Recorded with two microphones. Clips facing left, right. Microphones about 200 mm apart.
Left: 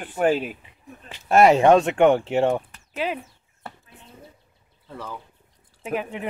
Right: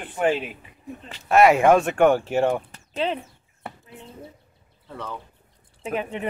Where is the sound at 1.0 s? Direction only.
Centre (ahead or behind).